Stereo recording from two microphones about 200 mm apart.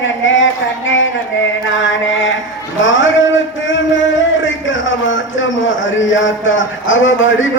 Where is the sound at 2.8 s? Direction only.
70° left (ahead or behind).